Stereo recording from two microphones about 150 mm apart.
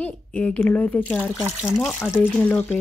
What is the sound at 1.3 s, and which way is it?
Speech, 5° right (ahead or behind).